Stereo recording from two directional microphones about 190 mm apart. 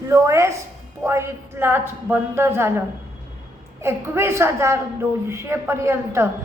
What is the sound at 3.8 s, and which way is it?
A woman's voice, 15° right (ahead or behind).